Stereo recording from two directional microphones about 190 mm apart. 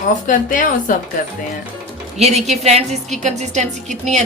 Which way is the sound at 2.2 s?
35° right (ahead or behind).